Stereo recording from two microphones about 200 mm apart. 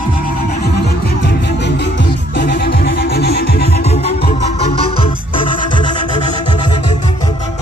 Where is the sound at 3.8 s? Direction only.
30° left (ahead or behind).